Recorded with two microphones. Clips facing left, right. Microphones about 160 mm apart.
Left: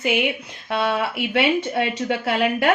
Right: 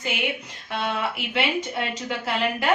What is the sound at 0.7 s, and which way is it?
Speech, 60° left (ahead or behind).